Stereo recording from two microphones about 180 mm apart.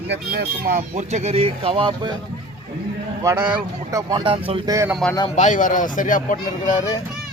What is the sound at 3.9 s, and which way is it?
Speech, 25° right (ahead or behind).